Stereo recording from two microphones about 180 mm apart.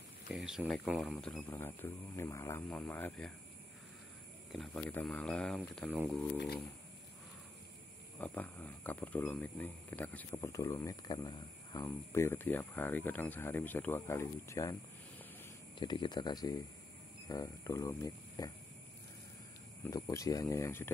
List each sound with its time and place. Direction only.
0.3 s speech: 5° right (ahead or behind)
4.5 s speech: centre (ahead or behind)
5.9 s speech: 10° right (ahead or behind)
6.1 s speech: 5° left (ahead or behind)
8.2 s speech: 10° left (ahead or behind)
15.8 s speech: 25° left (ahead or behind)
19.8 s speech: 15° left (ahead or behind)